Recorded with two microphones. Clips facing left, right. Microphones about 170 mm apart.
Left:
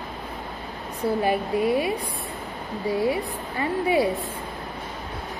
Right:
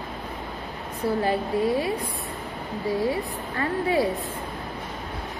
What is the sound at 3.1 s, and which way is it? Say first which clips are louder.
A woman's voice: left 1 dB; 15° left (ahead or behind).